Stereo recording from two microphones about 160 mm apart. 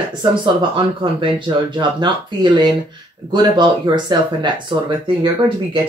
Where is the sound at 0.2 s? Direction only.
30° right (ahead or behind).